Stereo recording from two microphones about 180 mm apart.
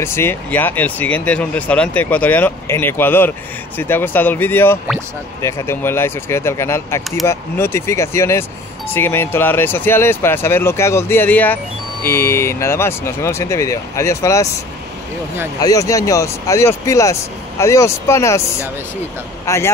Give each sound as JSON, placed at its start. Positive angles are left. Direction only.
{"t": 0.0, "sound": "speech", "side_deg": 15}
{"t": 15.6, "sound": "speech", "side_deg": 20}
{"t": 19.4, "sound": "speech", "side_deg": 15}